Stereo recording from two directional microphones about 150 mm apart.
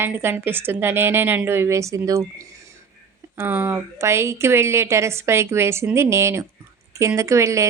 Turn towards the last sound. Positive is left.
turn(degrees=-20)  # may be behind; listen again after turning